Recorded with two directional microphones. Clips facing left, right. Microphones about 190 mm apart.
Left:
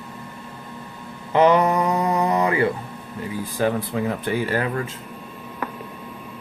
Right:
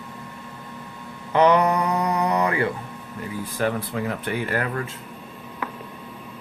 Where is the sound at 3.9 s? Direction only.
20° left (ahead or behind).